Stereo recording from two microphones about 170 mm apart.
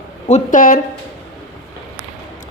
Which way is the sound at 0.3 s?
45° left (ahead or behind).